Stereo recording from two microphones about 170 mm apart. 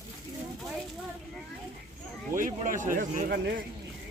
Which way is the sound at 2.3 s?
50° right (ahead or behind).